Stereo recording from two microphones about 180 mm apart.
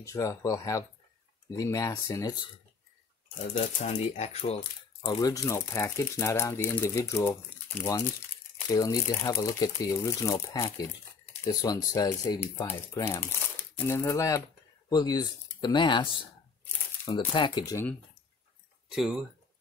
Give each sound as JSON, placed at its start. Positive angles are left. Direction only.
{"t": 0.0, "sound": "speech", "side_deg": 15}
{"t": 3.3, "sound": "speech", "side_deg": 40}
{"t": 5.0, "sound": "speech", "side_deg": 20}
{"t": 17.3, "sound": "speech", "side_deg": 25}
{"t": 18.9, "sound": "speech", "side_deg": -5}